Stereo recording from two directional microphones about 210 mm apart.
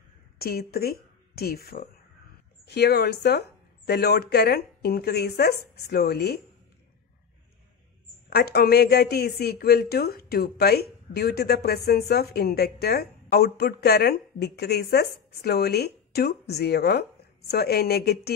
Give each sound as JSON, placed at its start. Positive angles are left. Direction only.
{"t": 0.4, "sound": "a woman's voice", "side_deg": 45}
{"t": 8.3, "sound": "a woman's voice", "side_deg": 50}